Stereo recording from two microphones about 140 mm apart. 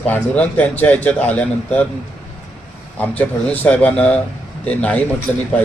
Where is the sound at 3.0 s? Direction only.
10° left (ahead or behind).